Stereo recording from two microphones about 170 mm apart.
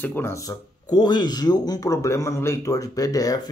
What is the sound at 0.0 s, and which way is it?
Speech, 15° left (ahead or behind).